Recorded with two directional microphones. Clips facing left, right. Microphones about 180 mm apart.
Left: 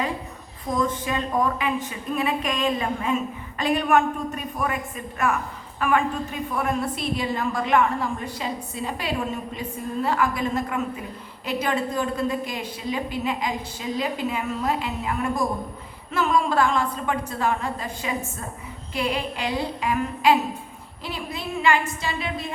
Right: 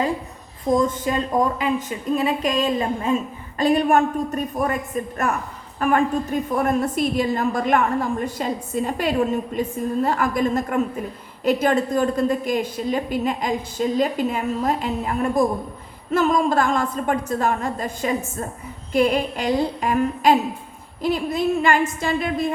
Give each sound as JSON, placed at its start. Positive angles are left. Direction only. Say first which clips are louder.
{"t": 1.0, "sound": "a man's voice", "louder": "right 3 dB", "side_deg": -35}